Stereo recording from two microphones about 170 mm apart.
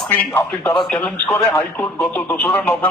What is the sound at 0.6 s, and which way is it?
Speech, 20° left (ahead or behind).